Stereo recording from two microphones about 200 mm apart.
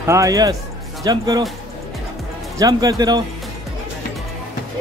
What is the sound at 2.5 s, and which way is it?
Speech, 15° right (ahead or behind).